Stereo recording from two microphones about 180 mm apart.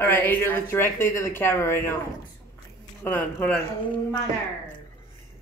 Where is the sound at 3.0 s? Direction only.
10° left (ahead or behind).